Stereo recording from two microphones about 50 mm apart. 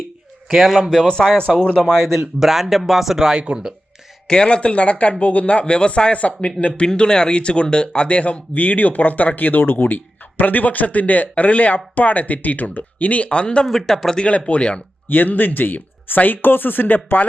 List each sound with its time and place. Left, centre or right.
0.4 s a man's voice: centre
0.8 s speech: centre; by 1.8 s left
1.8 s speech: centre
2.4 s speech: centre
4.3 s speech: left
6.8 s speech: centre
13.7 s speech: centre
14.2 s speech: left
15.0 s speech: left